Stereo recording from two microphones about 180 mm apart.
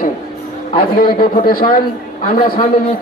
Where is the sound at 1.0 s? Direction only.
55° left (ahead or behind).